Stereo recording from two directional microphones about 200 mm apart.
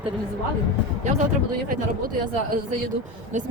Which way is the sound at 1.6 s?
45° right (ahead or behind).